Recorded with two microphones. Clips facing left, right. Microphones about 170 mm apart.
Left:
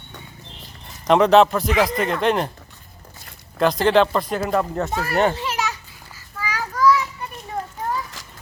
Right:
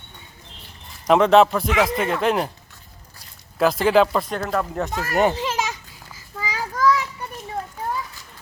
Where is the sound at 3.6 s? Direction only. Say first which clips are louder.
Even; 5° right (ahead or behind).